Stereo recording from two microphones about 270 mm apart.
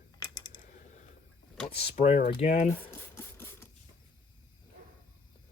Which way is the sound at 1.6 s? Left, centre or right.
Left.